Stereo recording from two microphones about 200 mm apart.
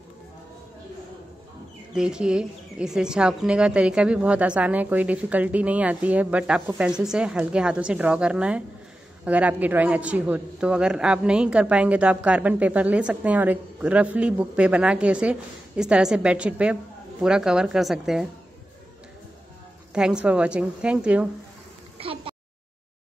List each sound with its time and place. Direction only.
2.0 s a man's voice: 5° right (ahead or behind)
19.9 s a man's voice: 5° right (ahead or behind)
22.0 s speech: 25° right (ahead or behind)